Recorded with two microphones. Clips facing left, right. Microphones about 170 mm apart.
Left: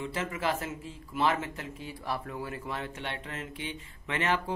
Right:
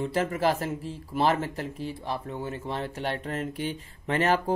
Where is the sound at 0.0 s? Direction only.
40° right (ahead or behind).